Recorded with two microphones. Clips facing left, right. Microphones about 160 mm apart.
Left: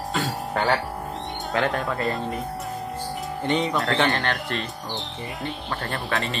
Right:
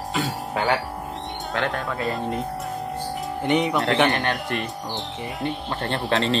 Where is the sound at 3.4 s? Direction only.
15° right (ahead or behind).